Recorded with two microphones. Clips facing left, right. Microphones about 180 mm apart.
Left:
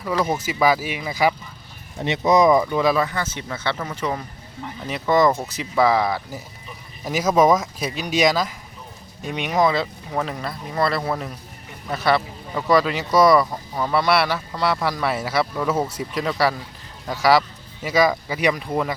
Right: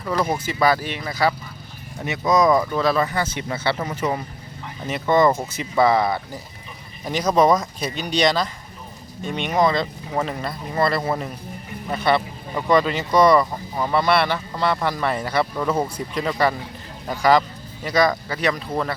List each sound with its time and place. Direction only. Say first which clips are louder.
0.0 s speech: even; 5° left (ahead or behind)
2.0 s speech: left 2 dB; 25° left (ahead or behind)
2.5 s speech: left 1 dB; 10° left (ahead or behind)
3.0 s speech: right 1 dB; 10° right (ahead or behind)
4.9 s speech: right 1 dB; centre (ahead or behind)